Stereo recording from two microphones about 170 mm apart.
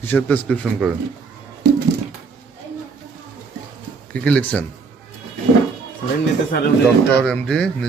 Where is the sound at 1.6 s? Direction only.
80° right.